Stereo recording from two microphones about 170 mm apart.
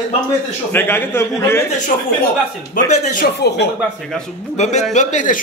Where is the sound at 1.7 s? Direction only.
45° left (ahead or behind).